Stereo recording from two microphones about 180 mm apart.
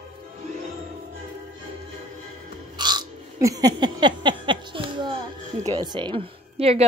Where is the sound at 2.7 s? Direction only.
25° right (ahead or behind).